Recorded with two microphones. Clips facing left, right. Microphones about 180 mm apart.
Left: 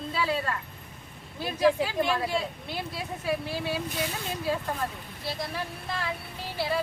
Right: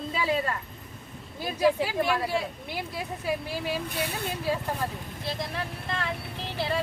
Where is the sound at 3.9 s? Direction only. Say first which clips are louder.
Right 1 dB; 60° right (ahead or behind).